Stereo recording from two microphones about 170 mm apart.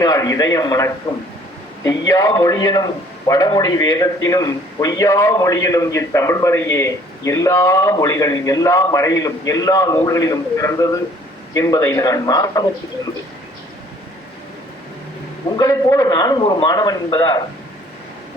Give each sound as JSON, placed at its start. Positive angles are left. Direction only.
{"t": 0.0, "sound": "a man's voice", "side_deg": 20}
{"t": 15.5, "sound": "a man's voice", "side_deg": 20}